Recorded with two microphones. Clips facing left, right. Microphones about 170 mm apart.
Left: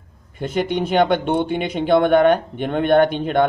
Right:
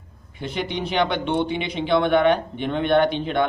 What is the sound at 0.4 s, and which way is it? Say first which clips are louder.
A man's voice: left 6 dB; 50° left (ahead or behind).